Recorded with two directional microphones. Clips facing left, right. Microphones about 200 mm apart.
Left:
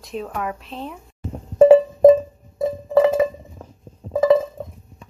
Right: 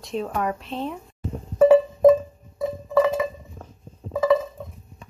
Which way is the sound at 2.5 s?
50° left (ahead or behind).